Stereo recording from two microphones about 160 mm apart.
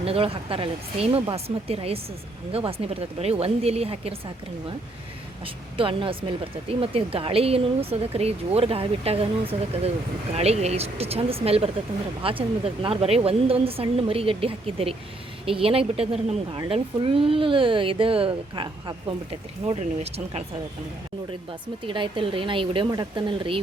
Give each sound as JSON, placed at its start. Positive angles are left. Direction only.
{"t": 0.0, "sound": "speech", "side_deg": -35}
{"t": 5.7, "sound": "speech", "side_deg": -35}
{"t": 21.8, "sound": "speech", "side_deg": -30}